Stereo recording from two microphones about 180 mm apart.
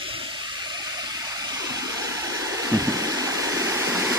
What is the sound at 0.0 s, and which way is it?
Water, 30° right (ahead or behind).